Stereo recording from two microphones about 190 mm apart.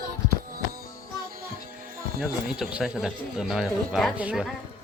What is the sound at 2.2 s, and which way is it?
Speech, centre (ahead or behind).